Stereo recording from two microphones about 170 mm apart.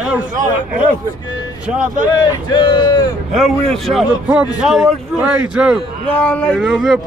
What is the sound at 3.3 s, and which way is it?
A man's voice, centre (ahead or behind).